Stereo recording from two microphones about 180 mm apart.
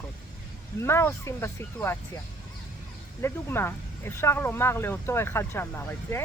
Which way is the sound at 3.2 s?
15° left (ahead or behind).